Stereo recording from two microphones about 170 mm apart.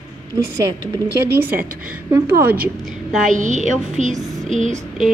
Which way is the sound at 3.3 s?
45° right (ahead or behind).